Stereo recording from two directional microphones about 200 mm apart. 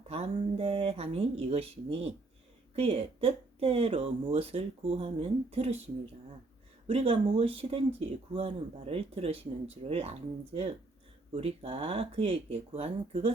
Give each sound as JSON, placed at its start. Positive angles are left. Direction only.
{"t": 0.1, "sound": "speech", "side_deg": -30}
{"t": 6.8, "sound": "speech", "side_deg": -30}